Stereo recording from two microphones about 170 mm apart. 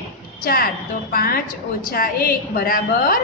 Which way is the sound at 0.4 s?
60° left (ahead or behind).